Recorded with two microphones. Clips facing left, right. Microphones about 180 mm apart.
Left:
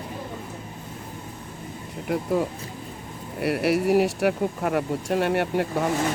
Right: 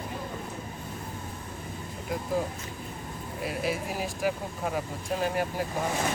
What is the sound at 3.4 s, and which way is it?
Speech, 70° left (ahead or behind).